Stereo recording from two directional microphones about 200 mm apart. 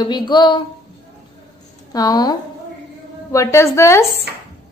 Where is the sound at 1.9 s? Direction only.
20° left (ahead or behind).